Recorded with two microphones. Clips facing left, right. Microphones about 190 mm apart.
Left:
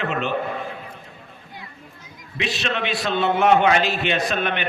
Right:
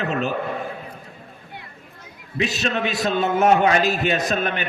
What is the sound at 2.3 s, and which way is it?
A man's voice, 45° right (ahead or behind).